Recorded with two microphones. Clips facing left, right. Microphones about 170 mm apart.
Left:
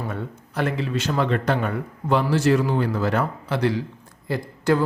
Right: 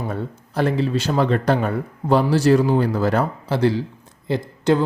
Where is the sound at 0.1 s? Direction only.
35° right (ahead or behind).